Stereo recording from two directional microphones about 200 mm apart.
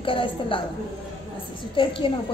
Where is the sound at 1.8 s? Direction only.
25° left (ahead or behind).